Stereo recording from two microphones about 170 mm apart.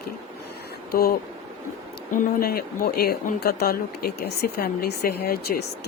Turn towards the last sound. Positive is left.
turn(degrees=70)  # may be behind; listen again after turning